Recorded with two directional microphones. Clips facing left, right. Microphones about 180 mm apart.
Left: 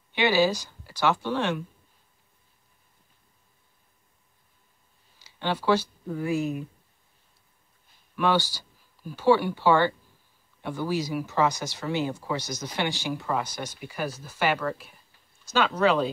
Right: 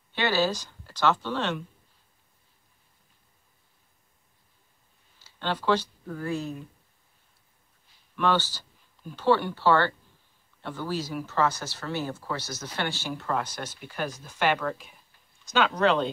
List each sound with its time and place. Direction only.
0.1 s speech: 15° left (ahead or behind)
5.2 s speech: 10° left (ahead or behind)
8.2 s speech: 10° left (ahead or behind)